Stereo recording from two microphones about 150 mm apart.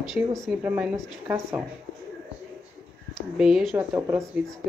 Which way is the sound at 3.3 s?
5° right (ahead or behind).